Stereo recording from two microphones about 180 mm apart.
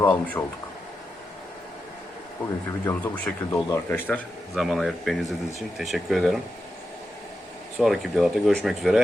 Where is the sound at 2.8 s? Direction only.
10° left (ahead or behind).